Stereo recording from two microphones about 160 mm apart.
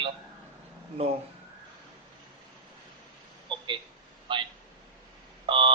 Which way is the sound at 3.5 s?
30° right (ahead or behind).